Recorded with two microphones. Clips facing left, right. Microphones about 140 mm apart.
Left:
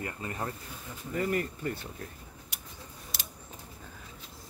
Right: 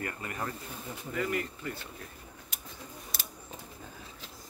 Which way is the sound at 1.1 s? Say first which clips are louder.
Left 3 dB; 40° left (ahead or behind).